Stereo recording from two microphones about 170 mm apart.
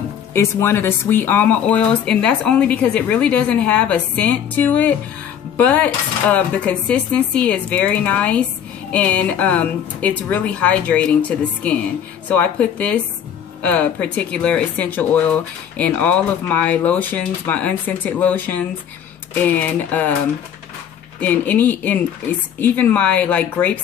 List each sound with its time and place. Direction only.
0.3 s speech: 15° left (ahead or behind)
21.2 s speech: 10° left (ahead or behind)